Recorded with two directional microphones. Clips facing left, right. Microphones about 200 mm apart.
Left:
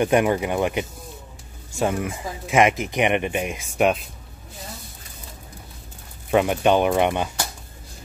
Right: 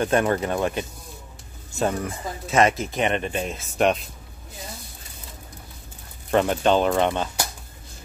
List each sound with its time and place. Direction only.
0.0 s speech: 15° left (ahead or behind)
6.3 s speech: 10° left (ahead or behind)